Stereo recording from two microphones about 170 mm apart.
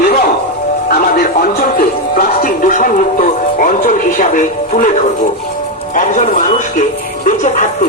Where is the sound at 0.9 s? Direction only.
55° left (ahead or behind).